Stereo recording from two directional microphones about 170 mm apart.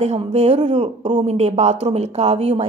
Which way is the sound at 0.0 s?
35° right (ahead or behind).